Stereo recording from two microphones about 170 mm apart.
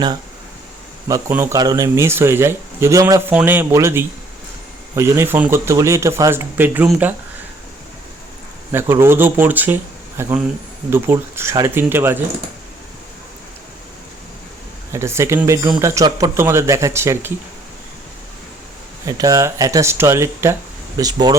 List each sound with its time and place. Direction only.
1.0 s speech: 15° right (ahead or behind)
8.7 s speech: 15° right (ahead or behind)
14.9 s speech: 15° right (ahead or behind)
19.0 s speech: 20° right (ahead or behind)